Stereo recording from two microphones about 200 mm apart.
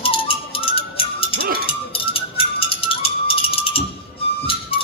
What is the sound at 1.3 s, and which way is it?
Music, 50° right (ahead or behind).